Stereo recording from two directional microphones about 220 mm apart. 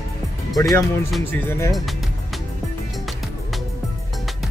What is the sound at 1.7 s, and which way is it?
Music, centre (ahead or behind).